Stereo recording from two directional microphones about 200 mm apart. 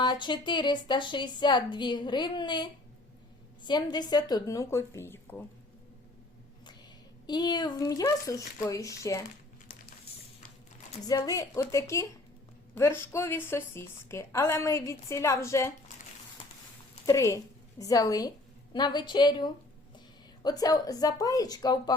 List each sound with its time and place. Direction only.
0.0 s a woman's voice: 20° left (ahead or behind)
7.3 s a woman's voice: 20° left (ahead or behind)
9.7 s a sound: 45° left (ahead or behind)
11.0 s a woman's voice: 20° left (ahead or behind)
17.1 s a woman's voice: 15° left (ahead or behind)